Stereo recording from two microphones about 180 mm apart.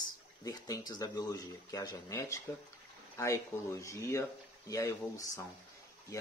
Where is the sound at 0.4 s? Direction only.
20° left (ahead or behind).